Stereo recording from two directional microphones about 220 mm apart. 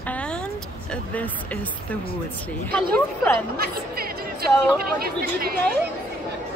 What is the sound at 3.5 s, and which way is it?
Speech, 45° right (ahead or behind).